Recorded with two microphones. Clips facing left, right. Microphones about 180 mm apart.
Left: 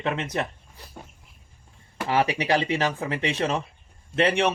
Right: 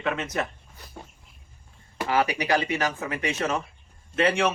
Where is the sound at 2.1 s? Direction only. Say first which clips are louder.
Left 1 dB; 30° left (ahead or behind).